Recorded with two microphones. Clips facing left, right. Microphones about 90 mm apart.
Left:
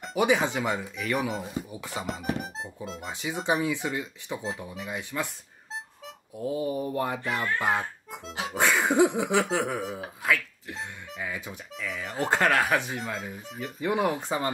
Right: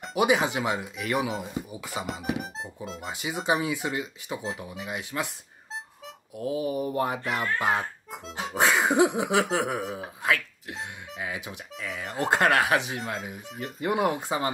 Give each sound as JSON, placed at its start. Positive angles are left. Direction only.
{"t": 0.0, "sound": "speech", "side_deg": -5}